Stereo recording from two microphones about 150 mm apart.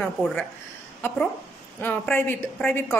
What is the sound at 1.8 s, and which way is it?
A man's voice, 10° left (ahead or behind).